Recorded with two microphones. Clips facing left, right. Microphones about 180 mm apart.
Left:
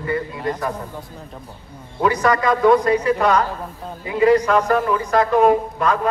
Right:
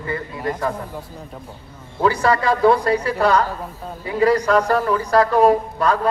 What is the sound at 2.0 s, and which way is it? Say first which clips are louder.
Speech: even; 30° right (ahead or behind).